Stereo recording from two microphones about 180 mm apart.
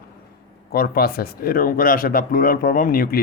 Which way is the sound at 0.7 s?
60° left (ahead or behind).